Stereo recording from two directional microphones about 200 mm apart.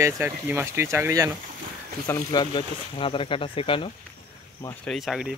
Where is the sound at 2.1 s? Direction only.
20° left (ahead or behind).